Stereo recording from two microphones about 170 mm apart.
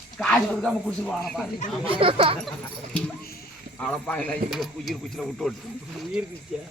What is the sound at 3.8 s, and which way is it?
A man's voice, 5° left (ahead or behind).